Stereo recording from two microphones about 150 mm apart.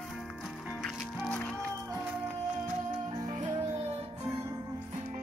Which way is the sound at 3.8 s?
40° right (ahead or behind).